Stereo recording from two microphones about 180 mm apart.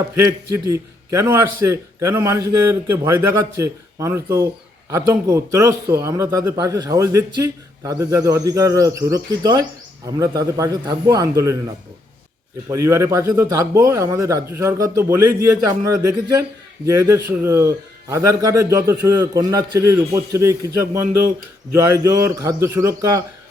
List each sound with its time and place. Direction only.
0.2 s a man's voice: 15° right (ahead or behind)
12.6 s a man's voice: 15° right (ahead or behind)